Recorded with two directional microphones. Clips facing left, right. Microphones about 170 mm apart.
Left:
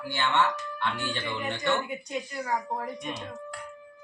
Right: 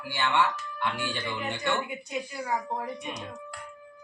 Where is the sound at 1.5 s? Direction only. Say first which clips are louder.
Left 2 dB; 5° right (ahead or behind).